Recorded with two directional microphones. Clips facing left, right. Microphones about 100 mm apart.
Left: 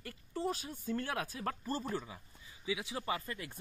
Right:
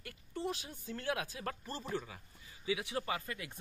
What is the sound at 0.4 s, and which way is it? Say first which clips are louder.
Speech: left 2 dB; 40° left (ahead or behind).